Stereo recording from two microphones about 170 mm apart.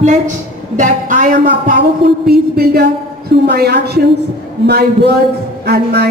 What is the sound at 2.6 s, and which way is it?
A woman's voice, 80° right.